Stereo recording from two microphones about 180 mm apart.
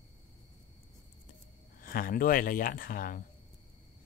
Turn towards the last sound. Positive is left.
turn(degrees=50)  # may be behind; listen again after turning